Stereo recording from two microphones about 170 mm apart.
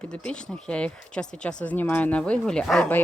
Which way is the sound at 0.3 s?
5° left (ahead or behind).